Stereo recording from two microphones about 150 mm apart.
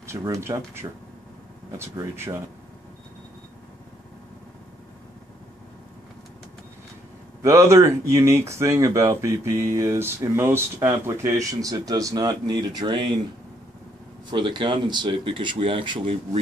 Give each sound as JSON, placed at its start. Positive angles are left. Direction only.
{"t": 0.0, "sound": "speech", "side_deg": -20}
{"t": 7.4, "sound": "speech", "side_deg": -20}
{"t": 14.3, "sound": "speech", "side_deg": -35}